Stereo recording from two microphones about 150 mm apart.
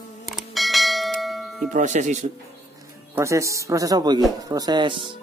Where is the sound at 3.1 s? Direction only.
20° right (ahead or behind).